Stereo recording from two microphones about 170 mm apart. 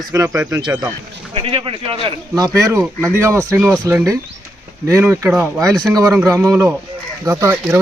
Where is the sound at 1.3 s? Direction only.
35° right (ahead or behind).